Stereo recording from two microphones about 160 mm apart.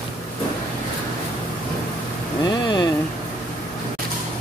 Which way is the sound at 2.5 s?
30° left (ahead or behind).